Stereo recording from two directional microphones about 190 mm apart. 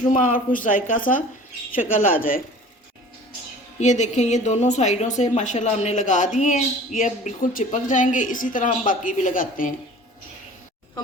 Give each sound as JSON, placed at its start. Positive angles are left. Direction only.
{"t": 0.1, "sound": "speech", "side_deg": 45}
{"t": 3.8, "sound": "a woman's voice", "side_deg": 40}